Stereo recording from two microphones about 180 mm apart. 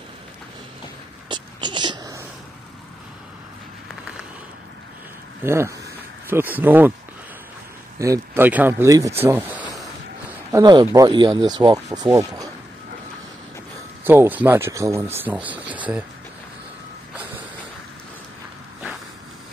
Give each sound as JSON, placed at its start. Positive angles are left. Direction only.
{"t": 1.3, "sound": "a sound", "side_deg": -25}
{"t": 5.4, "sound": "speech", "side_deg": -15}
{"t": 8.0, "sound": "speech", "side_deg": -15}
{"t": 10.5, "sound": "speech", "side_deg": -25}
{"t": 14.0, "sound": "speech", "side_deg": -10}